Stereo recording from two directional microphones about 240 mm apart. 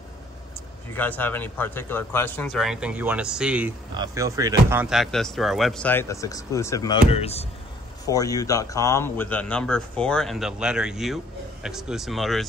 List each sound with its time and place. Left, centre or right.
0.9 s speech: centre
3.9 s speech: centre
7.1 s speech: left
8.1 s speech: centre